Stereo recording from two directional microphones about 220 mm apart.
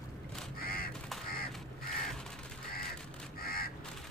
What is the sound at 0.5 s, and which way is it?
Crow, 40° left (ahead or behind).